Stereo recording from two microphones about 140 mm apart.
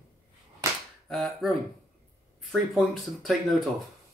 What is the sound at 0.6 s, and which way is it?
Whip, 20° right (ahead or behind).